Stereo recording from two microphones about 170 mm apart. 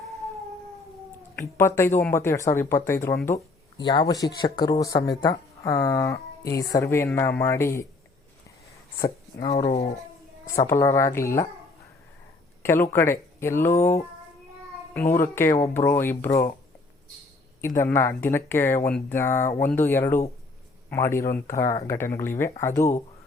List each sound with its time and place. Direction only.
1.4 s speech: 10° left (ahead or behind)
9.0 s speech: 35° left (ahead or behind)
10.7 s speech: 15° left (ahead or behind)
12.6 s speech: 15° left (ahead or behind)
17.7 s speech: 15° left (ahead or behind)